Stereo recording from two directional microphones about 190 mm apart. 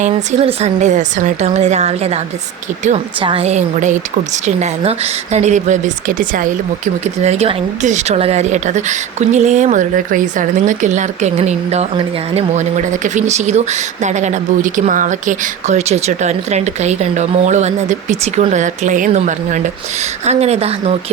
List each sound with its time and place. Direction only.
0.0 s a woman's voice: 35° right (ahead or behind)